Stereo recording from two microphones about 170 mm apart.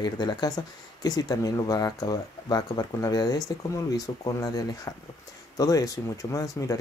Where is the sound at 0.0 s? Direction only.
25° left (ahead or behind).